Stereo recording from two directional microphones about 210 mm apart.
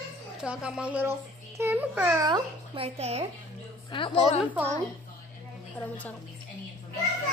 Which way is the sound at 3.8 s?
25° left (ahead or behind).